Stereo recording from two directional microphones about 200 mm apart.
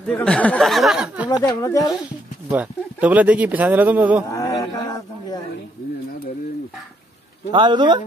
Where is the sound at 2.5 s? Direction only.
5° right (ahead or behind).